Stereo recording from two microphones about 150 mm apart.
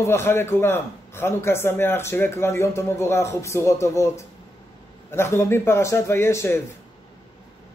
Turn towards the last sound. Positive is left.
turn(degrees=15)  # may be behind; listen again after turning